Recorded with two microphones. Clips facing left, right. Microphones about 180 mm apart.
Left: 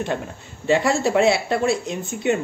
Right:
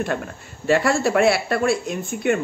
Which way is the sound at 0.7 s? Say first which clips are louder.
Even; 20° left (ahead or behind).